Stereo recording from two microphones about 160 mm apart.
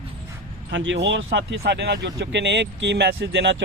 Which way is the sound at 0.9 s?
90° right.